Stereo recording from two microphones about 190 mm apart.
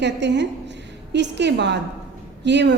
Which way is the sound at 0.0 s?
65° right (ahead or behind).